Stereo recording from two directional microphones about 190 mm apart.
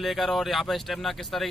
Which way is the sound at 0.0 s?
Centre (ahead or behind).